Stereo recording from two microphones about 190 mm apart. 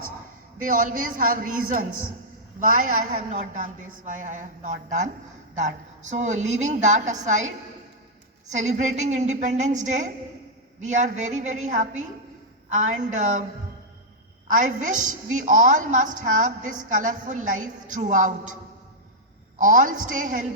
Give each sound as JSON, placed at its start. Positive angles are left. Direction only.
{"t": 0.6, "sound": "a woman's voice", "side_deg": -45}
{"t": 14.4, "sound": "a woman's voice", "side_deg": -40}
{"t": 19.5, "sound": "a woman's voice", "side_deg": -45}